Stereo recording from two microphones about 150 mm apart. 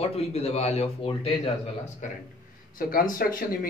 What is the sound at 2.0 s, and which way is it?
Speech, 60° left (ahead or behind).